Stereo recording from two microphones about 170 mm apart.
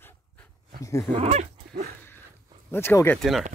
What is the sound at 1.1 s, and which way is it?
Speech, 40° right (ahead or behind).